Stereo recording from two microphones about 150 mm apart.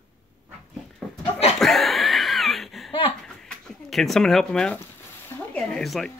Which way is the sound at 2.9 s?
35° left (ahead or behind).